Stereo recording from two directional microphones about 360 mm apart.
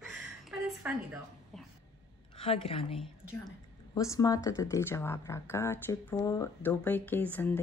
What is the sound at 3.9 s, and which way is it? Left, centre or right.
Speech, centre.